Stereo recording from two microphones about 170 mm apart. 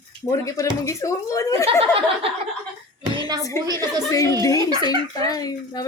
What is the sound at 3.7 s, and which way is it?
Speech, 20° right (ahead or behind).